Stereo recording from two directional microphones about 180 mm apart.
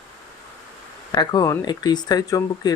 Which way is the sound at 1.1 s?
25° left (ahead or behind).